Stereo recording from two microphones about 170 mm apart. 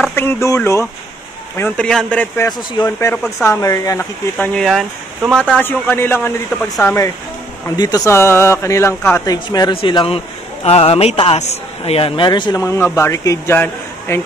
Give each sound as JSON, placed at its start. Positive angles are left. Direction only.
{"t": 0.1, "sound": "a man's voice", "side_deg": 15}
{"t": 1.6, "sound": "a man's voice", "side_deg": 5}
{"t": 4.6, "sound": "a man's voice", "side_deg": 0}
{"t": 7.6, "sound": "a man's voice", "side_deg": 25}